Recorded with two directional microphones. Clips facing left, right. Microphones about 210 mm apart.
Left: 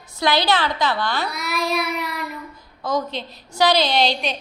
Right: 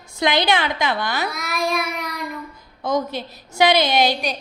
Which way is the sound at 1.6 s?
50° right (ahead or behind).